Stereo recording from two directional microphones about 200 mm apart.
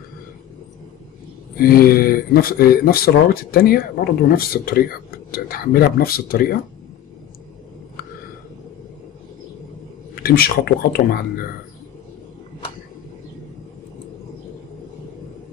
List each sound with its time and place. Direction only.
1.6 s speech: 50° left (ahead or behind)
10.2 s speech: 50° left (ahead or behind)